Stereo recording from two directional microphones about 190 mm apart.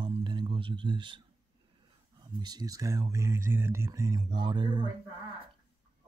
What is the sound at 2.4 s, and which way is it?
Speech, 20° right (ahead or behind).